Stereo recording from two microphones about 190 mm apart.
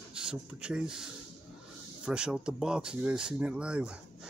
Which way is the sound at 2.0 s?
5° right (ahead or behind).